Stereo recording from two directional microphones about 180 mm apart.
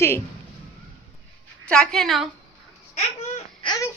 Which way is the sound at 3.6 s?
30° left (ahead or behind).